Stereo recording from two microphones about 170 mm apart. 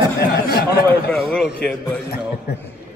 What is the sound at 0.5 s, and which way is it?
Speech, 65° left (ahead or behind).